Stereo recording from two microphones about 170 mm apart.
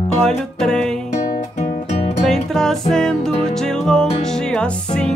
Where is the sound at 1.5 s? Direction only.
40° left (ahead or behind).